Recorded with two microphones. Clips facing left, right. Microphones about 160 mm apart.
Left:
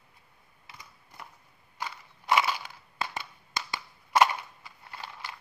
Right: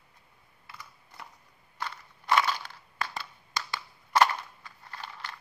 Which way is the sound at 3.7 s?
10° left (ahead or behind).